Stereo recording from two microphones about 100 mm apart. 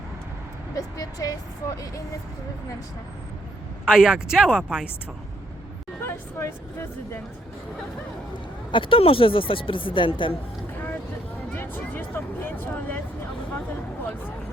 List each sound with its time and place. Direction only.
0.8 s speech: 35° left (ahead or behind)
3.8 s speech: 10° right (ahead or behind)
6.0 s speech: 25° left (ahead or behind)
8.7 s speech: 60° left (ahead or behind)
11.5 s music: 20° left (ahead or behind)